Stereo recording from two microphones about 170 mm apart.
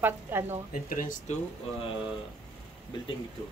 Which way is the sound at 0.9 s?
50° left (ahead or behind).